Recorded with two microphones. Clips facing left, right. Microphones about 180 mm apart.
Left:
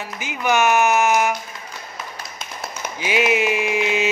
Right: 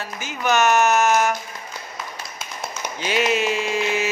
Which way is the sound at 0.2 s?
15° left (ahead or behind).